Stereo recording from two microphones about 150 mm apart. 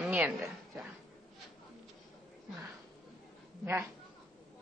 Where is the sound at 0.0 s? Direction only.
5° right (ahead or behind).